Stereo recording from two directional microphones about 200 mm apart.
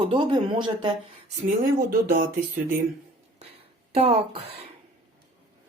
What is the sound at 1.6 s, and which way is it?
Speech, 45° right (ahead or behind).